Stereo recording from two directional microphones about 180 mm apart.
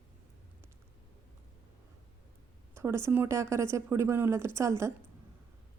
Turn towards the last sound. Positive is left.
turn(degrees=-15)  # may be behind; listen again after turning